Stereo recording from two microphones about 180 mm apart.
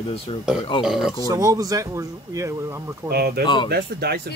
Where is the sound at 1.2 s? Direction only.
20° right (ahead or behind).